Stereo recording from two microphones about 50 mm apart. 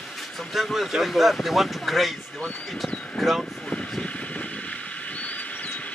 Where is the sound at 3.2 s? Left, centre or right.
Centre.